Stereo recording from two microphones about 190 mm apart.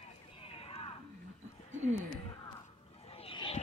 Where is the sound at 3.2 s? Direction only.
30° left (ahead or behind).